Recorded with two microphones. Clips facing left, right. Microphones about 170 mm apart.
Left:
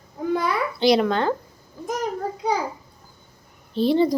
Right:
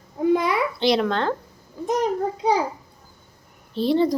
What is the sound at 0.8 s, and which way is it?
Speech, centre (ahead or behind).